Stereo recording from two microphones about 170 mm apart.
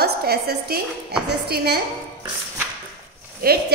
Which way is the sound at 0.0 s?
70° right (ahead or behind).